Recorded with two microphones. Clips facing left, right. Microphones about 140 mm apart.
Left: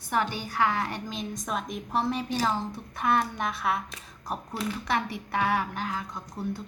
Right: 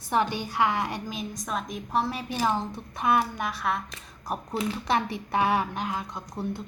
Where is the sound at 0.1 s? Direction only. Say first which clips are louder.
Right 3 dB; 15° right (ahead or behind); by 2.2 s centre (ahead or behind).